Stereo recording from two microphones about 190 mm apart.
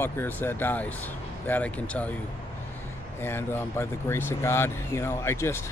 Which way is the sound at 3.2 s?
10° left (ahead or behind).